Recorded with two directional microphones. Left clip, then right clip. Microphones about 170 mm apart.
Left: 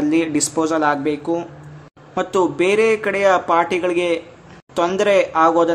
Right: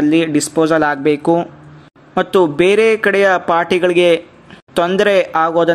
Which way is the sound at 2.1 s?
30° right (ahead or behind).